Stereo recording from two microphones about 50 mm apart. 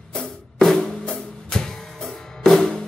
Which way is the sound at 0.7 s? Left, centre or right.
Centre.